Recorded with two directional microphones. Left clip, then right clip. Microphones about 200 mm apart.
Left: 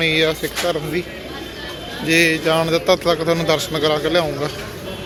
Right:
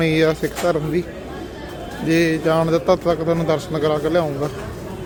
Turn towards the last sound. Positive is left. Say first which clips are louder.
# left 1 dB
turn(degrees=-20)  # may be behind; listen again after turning